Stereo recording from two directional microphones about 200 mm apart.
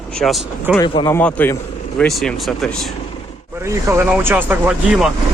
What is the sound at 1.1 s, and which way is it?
Speech, 10° left (ahead or behind).